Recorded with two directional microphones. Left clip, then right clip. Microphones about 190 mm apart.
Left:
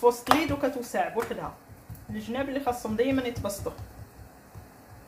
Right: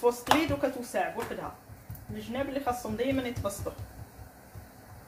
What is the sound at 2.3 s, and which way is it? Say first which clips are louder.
Speech: left 2 dB; 45° left (ahead or behind).